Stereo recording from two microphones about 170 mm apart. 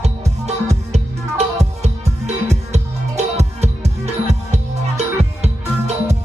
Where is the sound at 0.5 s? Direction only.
40° right (ahead or behind).